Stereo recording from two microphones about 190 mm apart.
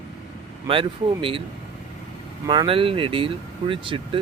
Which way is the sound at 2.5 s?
25° right (ahead or behind).